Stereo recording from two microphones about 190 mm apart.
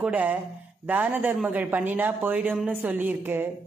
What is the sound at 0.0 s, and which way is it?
A man's voice, 10° right (ahead or behind).